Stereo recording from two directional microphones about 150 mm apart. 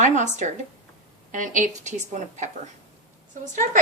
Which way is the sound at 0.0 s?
50° right (ahead or behind).